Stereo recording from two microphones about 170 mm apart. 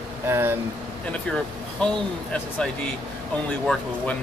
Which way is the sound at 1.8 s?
5° left (ahead or behind).